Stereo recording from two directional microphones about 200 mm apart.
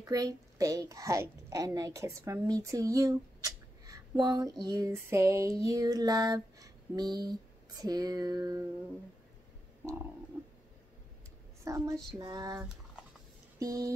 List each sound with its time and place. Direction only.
0.0 s speech: 15° right (ahead or behind)
7.8 s music: 20° right (ahead or behind)
10.3 s frog: 10° right (ahead or behind)
11.6 s a woman's voice: 15° right (ahead or behind)
12.2 s music: 15° right (ahead or behind)
13.6 s speech: 15° right (ahead or behind)